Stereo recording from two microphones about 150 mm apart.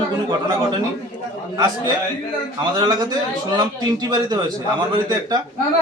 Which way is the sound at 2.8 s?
25° right (ahead or behind).